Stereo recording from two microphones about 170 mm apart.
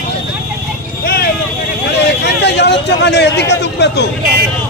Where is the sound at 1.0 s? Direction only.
65° left (ahead or behind).